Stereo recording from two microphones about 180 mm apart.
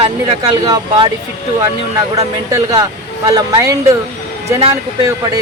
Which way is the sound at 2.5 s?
20° right (ahead or behind).